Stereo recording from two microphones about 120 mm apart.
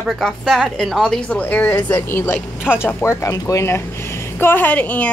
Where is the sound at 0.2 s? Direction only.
Centre (ahead or behind).